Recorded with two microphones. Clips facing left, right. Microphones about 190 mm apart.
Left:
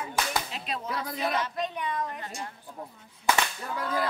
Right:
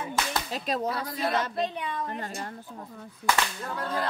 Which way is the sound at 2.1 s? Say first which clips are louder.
Right 3 dB; 45° right (ahead or behind).